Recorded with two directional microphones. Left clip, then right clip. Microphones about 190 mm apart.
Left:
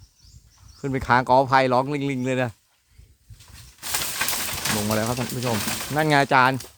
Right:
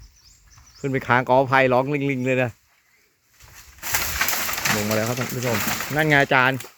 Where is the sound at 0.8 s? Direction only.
5° right (ahead or behind).